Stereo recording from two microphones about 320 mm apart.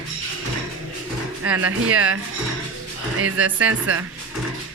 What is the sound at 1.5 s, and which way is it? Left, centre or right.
Speech, centre.